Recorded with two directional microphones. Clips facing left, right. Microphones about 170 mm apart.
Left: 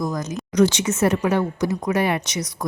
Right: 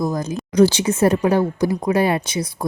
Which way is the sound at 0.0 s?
30° right (ahead or behind).